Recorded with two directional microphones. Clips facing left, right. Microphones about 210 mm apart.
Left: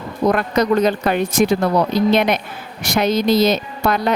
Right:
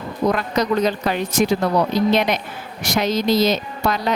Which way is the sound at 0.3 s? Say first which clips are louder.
Left 4 dB; 55° left (ahead or behind).